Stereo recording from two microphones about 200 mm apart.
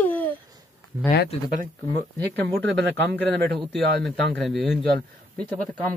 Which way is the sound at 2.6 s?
60° right (ahead or behind).